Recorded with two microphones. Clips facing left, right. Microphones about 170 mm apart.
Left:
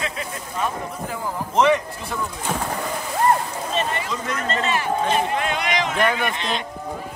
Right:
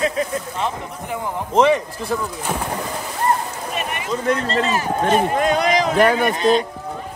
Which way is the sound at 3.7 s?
15° right (ahead or behind).